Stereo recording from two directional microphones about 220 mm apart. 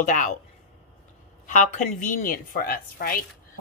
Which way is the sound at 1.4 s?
35° left (ahead or behind).